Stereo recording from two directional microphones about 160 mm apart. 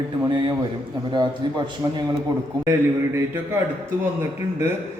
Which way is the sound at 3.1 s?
15° right (ahead or behind).